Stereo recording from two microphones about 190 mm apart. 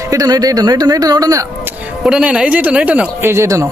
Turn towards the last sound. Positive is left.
turn(degrees=-15)  # may be behind; listen again after turning